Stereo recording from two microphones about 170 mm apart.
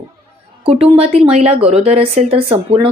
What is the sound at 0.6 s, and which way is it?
Speech, 35° right (ahead or behind).